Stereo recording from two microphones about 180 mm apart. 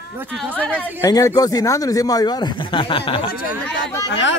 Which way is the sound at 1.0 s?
20° left (ahead or behind).